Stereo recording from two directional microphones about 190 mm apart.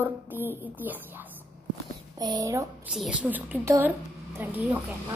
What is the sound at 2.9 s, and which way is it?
A woman's voice, 5° right (ahead or behind).